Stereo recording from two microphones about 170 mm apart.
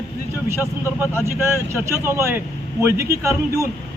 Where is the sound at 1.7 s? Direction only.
15° right (ahead or behind).